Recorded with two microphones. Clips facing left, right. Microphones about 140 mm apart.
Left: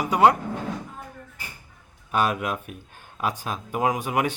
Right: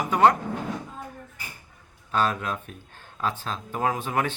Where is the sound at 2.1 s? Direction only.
15° left (ahead or behind).